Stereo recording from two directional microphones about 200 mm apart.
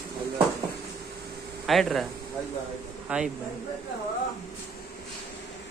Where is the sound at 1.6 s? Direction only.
Centre (ahead or behind).